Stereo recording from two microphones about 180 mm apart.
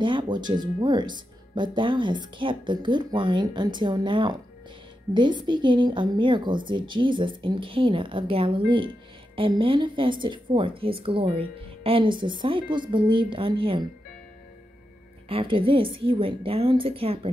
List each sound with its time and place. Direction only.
0.0 s a woman's voice: 25° right (ahead or behind)
15.2 s a woman's voice: 30° right (ahead or behind)